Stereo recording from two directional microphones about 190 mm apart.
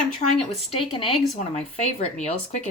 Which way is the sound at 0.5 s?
30° left (ahead or behind).